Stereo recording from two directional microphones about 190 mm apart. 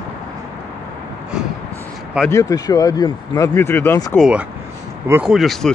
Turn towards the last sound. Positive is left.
turn(degrees=0)  # may be behind; listen again after turning